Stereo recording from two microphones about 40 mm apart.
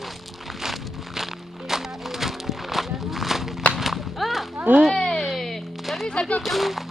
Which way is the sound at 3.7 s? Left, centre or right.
Centre.